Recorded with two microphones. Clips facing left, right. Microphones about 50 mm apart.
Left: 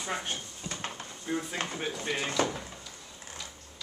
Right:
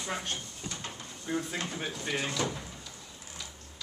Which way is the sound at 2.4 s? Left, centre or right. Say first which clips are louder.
Left 7 dB; left.